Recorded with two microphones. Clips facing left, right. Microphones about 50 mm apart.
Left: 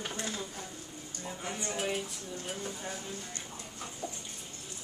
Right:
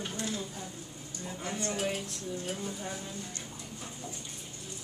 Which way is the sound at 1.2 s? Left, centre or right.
Centre.